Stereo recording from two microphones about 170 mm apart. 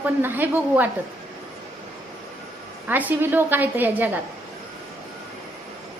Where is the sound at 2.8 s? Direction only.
10° right (ahead or behind).